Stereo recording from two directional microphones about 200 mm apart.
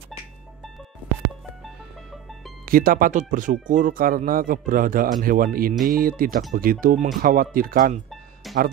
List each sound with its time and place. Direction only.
2.6 s speech: 45° right (ahead or behind)
8.5 s music: centre (ahead or behind)